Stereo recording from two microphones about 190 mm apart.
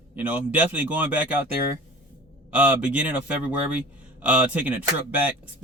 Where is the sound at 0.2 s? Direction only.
10° right (ahead or behind).